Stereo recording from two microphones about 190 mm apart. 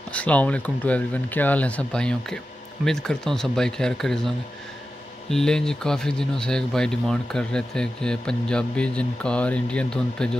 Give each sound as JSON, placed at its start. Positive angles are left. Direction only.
{"t": 0.1, "sound": "speech", "side_deg": 5}
{"t": 5.3, "sound": "speech", "side_deg": 5}